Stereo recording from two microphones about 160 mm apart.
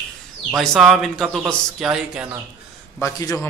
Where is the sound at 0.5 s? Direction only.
Centre (ahead or behind).